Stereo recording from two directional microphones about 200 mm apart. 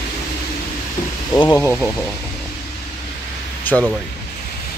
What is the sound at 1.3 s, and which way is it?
Speech, 15° left (ahead or behind).